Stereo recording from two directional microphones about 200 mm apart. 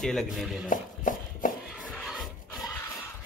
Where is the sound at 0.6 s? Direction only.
40° left (ahead or behind).